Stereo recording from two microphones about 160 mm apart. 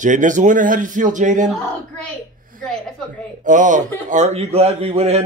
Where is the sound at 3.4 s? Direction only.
50° right (ahead or behind).